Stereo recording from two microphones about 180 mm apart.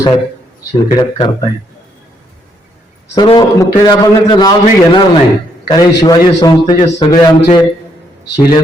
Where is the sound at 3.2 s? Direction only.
25° left (ahead or behind).